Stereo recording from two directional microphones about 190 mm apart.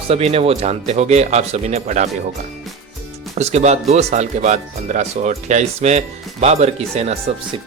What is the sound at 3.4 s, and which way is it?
Speech, 35° right (ahead or behind).